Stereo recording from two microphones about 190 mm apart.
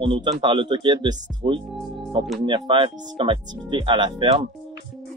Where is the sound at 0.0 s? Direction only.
30° right (ahead or behind).